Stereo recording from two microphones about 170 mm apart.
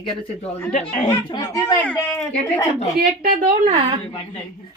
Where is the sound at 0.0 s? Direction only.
30° left (ahead or behind).